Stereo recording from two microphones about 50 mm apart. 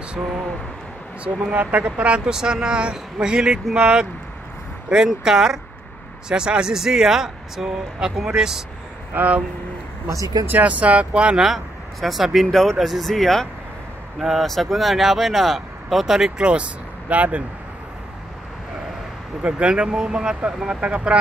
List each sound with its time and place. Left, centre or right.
1.2 s speech: right
9.1 s speech: right
10.6 s speech: right
11.3 s speech: centre
16.3 s speech: centre
19.4 s speech: right